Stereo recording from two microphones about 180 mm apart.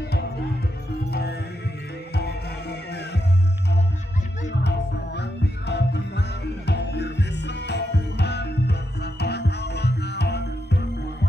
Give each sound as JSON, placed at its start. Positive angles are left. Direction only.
{"t": 0.0, "sound": "music", "side_deg": 65}
{"t": 4.6, "sound": "music", "side_deg": 70}